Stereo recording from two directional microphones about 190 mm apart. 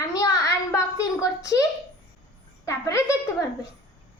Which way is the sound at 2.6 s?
15° left (ahead or behind).